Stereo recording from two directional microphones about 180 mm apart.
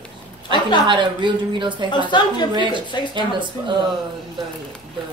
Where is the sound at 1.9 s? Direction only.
25° left (ahead or behind).